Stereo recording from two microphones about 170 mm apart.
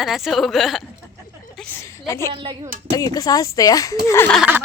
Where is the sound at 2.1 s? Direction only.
15° left (ahead or behind).